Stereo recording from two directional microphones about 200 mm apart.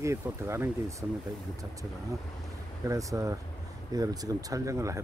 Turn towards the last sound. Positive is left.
turn(degrees=-15)  # may be behind; listen again after turning